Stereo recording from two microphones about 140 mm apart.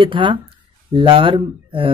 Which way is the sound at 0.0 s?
35° right (ahead or behind).